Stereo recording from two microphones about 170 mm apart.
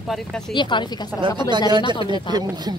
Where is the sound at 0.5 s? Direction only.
25° left (ahead or behind).